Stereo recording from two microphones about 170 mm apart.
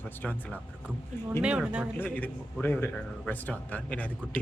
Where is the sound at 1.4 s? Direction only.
5° right (ahead or behind).